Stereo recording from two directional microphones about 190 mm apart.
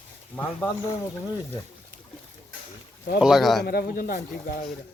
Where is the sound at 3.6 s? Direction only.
50° left (ahead or behind).